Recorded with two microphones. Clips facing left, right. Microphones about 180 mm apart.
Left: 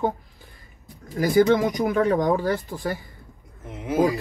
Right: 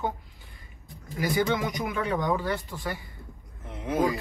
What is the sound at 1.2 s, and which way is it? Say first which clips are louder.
Speech: left 8 dB; 40° left (ahead or behind).